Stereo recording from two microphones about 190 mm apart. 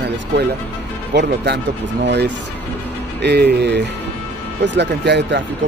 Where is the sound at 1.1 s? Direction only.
65° right (ahead or behind).